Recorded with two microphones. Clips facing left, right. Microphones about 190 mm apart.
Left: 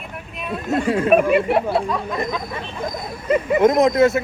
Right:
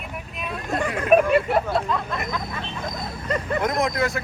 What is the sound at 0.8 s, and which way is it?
Speech, 30° left (ahead or behind).